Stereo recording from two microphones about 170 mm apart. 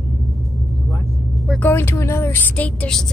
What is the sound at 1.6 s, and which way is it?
Speech, 15° left (ahead or behind).